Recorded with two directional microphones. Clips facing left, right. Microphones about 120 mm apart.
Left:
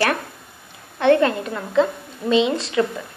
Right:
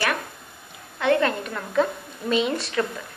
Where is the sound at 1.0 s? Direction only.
30° left (ahead or behind).